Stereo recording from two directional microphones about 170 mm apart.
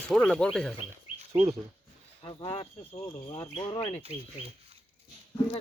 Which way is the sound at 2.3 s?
30° left (ahead or behind).